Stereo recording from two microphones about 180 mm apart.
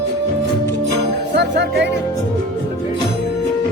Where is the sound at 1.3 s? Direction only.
70° right (ahead or behind).